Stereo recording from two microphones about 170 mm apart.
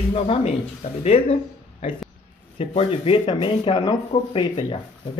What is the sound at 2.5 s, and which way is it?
Speech, 35° left (ahead or behind).